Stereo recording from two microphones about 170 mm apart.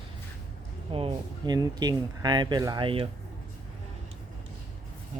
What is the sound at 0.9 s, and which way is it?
Speech, 30° right (ahead or behind).